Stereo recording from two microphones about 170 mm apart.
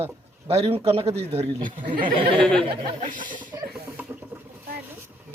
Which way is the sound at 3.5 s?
20° right (ahead or behind).